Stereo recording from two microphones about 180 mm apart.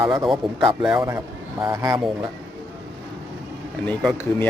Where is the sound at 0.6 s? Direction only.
30° right (ahead or behind).